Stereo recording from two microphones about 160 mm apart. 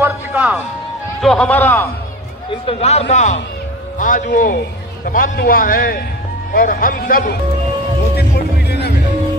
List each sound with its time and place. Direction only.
0.0 s music: 10° right (ahead or behind)
1.2 s a man's voice: 5° left (ahead or behind)
2.6 s a man's voice: 40° left (ahead or behind); by 7.3 s 65° left (ahead or behind)
8.2 s music: 90° left